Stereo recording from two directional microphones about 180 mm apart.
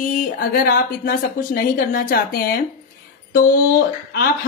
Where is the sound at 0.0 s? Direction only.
50° left (ahead or behind).